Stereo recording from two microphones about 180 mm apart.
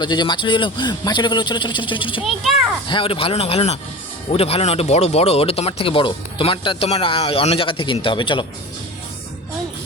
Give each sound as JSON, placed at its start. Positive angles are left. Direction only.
{"t": 0.0, "sound": "a man's voice", "side_deg": 25}